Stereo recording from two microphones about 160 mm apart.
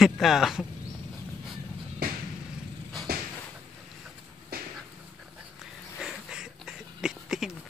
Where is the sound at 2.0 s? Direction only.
70° right (ahead or behind).